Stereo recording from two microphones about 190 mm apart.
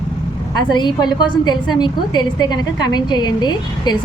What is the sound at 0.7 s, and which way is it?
A woman's voice, 25° left (ahead or behind).